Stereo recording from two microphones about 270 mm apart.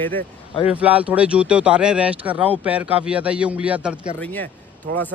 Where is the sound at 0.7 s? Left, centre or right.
Centre.